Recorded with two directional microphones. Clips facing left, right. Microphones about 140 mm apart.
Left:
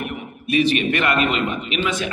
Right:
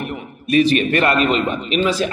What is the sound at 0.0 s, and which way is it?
A man's voice, 40° right (ahead or behind).